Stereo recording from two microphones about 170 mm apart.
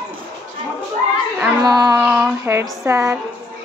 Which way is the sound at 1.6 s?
25° right (ahead or behind).